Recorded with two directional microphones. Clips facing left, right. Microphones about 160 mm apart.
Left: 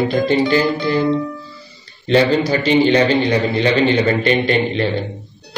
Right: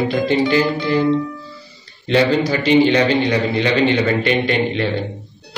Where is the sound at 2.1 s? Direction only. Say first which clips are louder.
Left 1 dB; 35° left (ahead or behind).